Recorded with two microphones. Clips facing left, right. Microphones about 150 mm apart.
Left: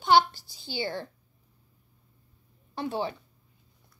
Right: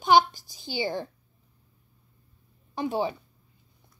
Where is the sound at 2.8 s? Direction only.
15° right (ahead or behind).